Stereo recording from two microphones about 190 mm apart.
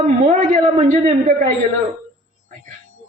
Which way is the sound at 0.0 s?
40° right (ahead or behind).